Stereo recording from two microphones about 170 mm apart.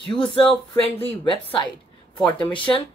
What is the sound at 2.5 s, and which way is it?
Speech, 30° left (ahead or behind).